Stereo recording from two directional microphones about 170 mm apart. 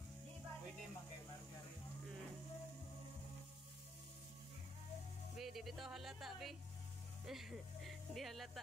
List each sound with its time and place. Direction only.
5.4 s speech: centre (ahead or behind)